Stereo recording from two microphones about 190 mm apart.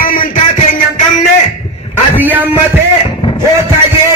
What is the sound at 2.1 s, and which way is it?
Speech, 10° right (ahead or behind).